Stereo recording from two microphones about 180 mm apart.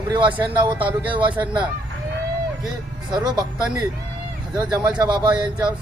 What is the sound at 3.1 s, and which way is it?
Speech, 25° right (ahead or behind).